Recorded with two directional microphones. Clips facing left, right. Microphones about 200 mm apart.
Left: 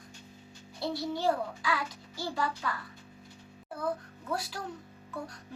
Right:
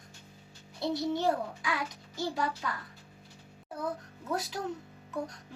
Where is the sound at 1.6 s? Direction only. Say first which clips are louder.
Left 1 dB; 20° right (ahead or behind).